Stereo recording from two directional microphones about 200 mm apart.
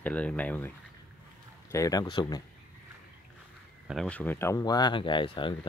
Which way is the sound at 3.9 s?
5° left (ahead or behind).